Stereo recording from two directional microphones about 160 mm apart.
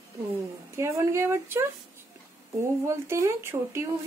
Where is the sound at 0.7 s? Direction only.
15° right (ahead or behind).